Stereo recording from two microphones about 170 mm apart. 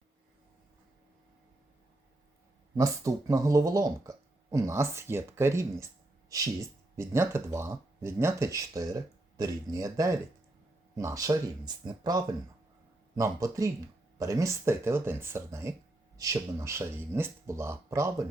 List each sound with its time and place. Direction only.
2.7 s speech: 20° right (ahead or behind)